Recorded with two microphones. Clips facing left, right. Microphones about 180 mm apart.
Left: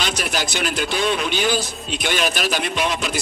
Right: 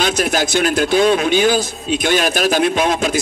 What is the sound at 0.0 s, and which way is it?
A man's voice, 50° right (ahead or behind).